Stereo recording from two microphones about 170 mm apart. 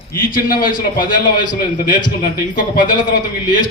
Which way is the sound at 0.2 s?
55° left (ahead or behind).